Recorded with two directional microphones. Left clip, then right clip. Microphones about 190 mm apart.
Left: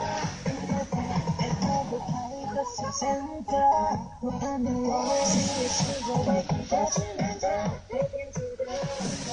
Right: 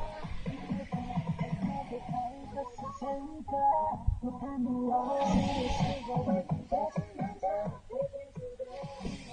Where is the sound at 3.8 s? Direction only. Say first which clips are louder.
Left 6 dB; 45° left (ahead or behind).